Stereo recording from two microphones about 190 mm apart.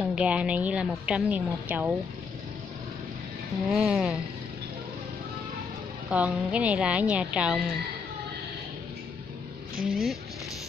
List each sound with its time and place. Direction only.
0.0 s a woman's voice: 5° right (ahead or behind)
3.7 s speech: 5° right (ahead or behind)
6.0 s a woman's voice: 5° right (ahead or behind)
9.8 s speech: 50° right (ahead or behind)